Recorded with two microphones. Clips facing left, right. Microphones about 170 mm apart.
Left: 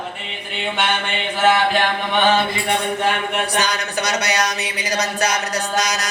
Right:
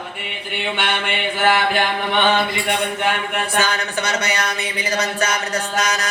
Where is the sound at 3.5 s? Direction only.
40° left (ahead or behind).